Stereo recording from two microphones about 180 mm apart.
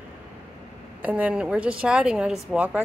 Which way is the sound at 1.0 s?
10° right (ahead or behind).